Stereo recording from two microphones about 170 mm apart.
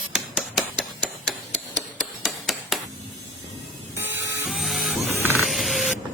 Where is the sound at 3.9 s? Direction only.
15° right (ahead or behind).